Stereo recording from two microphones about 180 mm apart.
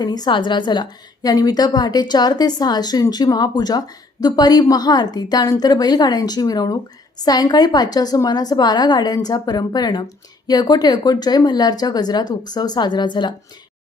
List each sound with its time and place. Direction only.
0.0 s a woman's voice: 20° left (ahead or behind)